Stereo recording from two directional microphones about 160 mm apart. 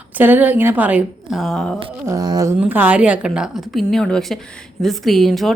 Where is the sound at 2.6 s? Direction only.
10° right (ahead or behind).